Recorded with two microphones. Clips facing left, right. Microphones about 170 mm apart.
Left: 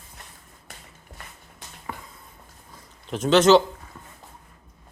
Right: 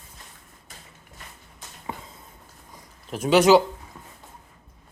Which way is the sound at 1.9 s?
20° right (ahead or behind).